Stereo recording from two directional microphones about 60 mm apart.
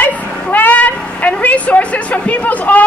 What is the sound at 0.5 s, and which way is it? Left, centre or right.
Cat, left.